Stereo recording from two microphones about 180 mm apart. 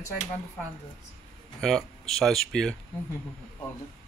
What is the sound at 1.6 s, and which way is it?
Speech, centre (ahead or behind).